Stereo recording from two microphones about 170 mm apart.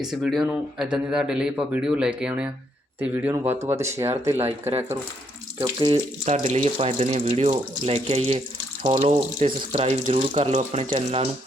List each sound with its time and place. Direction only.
0.0 s speech: centre (ahead or behind); by 5.9 s 25° right (ahead or behind)
5.9 s speech: 40° right (ahead or behind)